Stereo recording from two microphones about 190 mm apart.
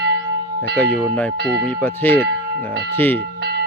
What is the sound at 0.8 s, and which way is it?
Speech, 10° left (ahead or behind).